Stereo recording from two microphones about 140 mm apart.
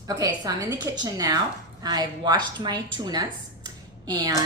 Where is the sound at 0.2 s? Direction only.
25° right (ahead or behind).